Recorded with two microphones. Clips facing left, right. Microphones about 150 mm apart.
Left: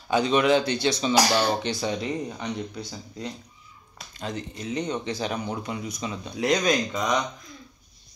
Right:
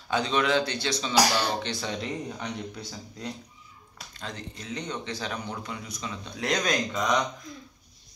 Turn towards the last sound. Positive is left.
turn(degrees=5)  # may be behind; listen again after turning